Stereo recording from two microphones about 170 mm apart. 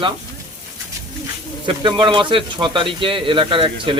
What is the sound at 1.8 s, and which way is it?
Speech, 30° right (ahead or behind).